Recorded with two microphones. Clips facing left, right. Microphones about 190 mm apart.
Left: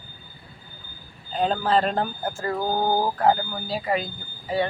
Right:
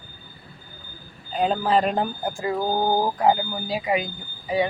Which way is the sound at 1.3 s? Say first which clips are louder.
Right 1 dB; 10° right (ahead or behind).